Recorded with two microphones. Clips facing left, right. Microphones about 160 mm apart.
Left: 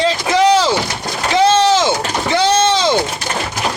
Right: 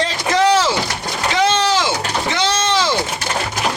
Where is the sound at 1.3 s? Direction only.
20° left (ahead or behind).